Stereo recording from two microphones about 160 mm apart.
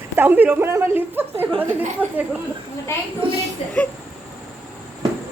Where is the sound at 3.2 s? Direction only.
30° right (ahead or behind).